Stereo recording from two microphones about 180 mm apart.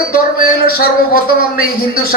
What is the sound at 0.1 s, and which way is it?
A man's voice, 55° left (ahead or behind).